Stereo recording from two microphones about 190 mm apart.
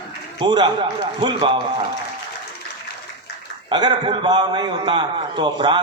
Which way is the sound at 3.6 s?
25° right (ahead or behind).